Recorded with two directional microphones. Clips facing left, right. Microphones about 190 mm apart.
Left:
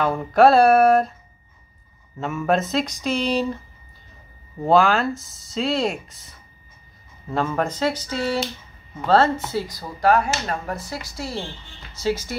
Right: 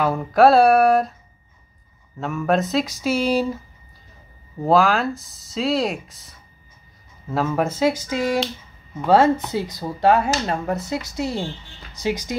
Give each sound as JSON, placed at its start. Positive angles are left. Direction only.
{"t": 0.0, "sound": "speech", "side_deg": 0}
{"t": 2.1, "sound": "speech", "side_deg": 0}